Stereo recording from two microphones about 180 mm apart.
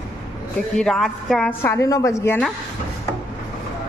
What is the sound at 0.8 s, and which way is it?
Speech, centre (ahead or behind).